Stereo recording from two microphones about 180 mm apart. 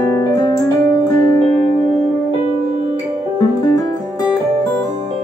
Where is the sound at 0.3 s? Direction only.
20° left (ahead or behind).